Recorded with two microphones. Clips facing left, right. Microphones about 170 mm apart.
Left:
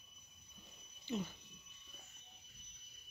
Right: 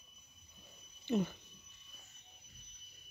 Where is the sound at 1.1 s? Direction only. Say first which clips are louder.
Right 7 dB; 60° right (ahead or behind).